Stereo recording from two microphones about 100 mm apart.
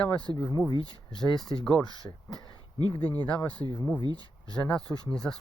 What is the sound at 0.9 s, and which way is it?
Speech, 45° left (ahead or behind).